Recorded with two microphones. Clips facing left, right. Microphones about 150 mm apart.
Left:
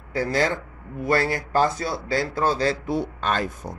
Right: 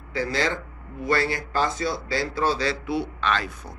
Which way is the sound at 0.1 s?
50° left (ahead or behind).